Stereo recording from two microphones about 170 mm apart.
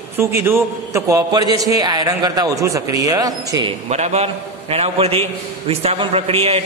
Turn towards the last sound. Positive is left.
turn(degrees=-35)  # may be behind; listen again after turning